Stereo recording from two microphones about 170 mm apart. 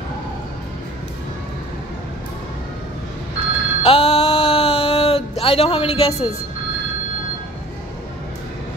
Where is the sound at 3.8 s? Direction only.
35° left (ahead or behind).